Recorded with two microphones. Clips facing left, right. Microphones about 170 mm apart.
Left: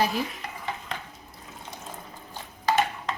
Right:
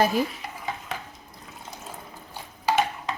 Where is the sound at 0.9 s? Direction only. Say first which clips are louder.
Right 2 dB; 5° right (ahead or behind).